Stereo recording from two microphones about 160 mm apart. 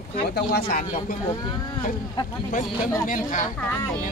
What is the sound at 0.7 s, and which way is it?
Speech, 65° left (ahead or behind).